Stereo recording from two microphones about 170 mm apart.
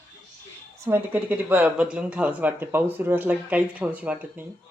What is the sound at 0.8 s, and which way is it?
Speech, 10° right (ahead or behind).